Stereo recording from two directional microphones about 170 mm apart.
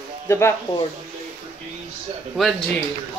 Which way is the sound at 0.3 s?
15° left (ahead or behind).